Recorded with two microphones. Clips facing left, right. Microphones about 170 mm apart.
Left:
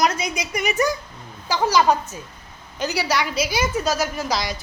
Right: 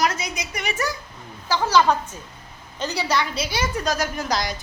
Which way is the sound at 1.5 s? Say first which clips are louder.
Left 1 dB; 10° left (ahead or behind).